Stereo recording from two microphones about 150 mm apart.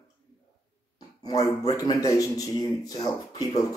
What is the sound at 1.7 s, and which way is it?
A man's voice, 20° left (ahead or behind).